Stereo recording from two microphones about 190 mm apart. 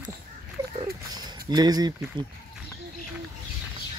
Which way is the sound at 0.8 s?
20° right (ahead or behind).